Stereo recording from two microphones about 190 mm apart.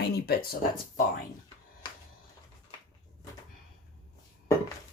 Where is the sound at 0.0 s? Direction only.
55° left (ahead or behind).